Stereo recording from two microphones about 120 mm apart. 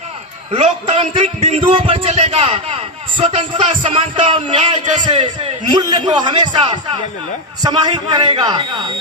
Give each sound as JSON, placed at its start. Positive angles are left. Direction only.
{"t": 0.5, "sound": "a man's voice", "side_deg": -50}